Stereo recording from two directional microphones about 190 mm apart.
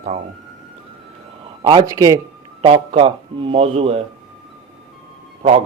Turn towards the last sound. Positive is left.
turn(degrees=-35)  # may be behind; listen again after turning